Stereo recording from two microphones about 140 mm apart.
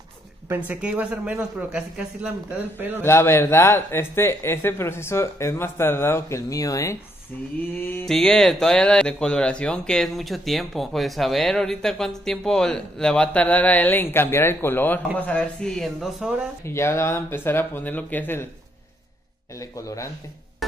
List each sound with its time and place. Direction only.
0.7 s a man's voice: 10° right (ahead or behind)
3.0 s speech: 15° left (ahead or behind)
8.1 s speech: 5° left (ahead or behind)
16.6 s speech: 20° left (ahead or behind)
19.6 s speech: 25° left (ahead or behind)